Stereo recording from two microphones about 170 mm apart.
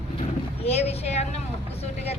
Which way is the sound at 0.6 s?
40° left (ahead or behind).